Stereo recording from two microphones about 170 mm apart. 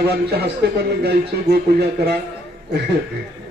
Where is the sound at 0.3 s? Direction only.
70° right (ahead or behind).